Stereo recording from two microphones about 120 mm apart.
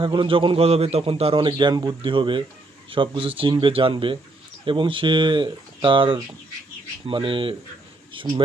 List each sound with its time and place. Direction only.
0.0 s a man's voice: 45° right (ahead or behind)